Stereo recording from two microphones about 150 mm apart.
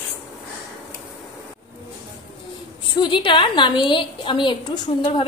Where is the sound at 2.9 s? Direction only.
30° left (ahead or behind).